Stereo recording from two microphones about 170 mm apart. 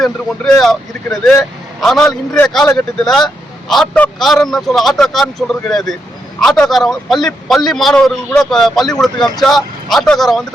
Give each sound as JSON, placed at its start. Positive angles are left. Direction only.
{"t": 0.0, "sound": "speech", "side_deg": 0}
{"t": 9.1, "sound": "speech", "side_deg": 25}
{"t": 9.4, "sound": "speech", "side_deg": 0}